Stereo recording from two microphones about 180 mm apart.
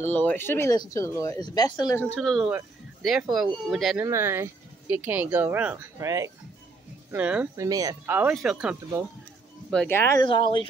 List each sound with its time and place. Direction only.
0.1 s speech: 10° left (ahead or behind)
2.0 s speech: centre (ahead or behind)
4.0 s speech: 15° right (ahead or behind)
7.5 s speech: 20° right (ahead or behind)
9.7 s speech: 10° left (ahead or behind)
10.2 s speech: 30° left (ahead or behind)